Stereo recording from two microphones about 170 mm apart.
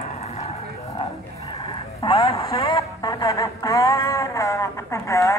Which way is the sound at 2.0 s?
30° left (ahead or behind).